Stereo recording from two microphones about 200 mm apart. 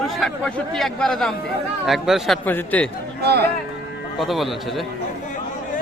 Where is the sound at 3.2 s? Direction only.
55° right (ahead or behind).